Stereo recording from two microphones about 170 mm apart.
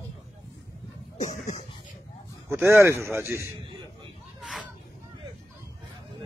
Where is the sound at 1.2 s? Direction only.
45° left (ahead or behind).